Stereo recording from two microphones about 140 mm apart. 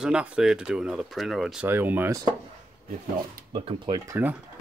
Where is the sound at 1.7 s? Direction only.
15° right (ahead or behind).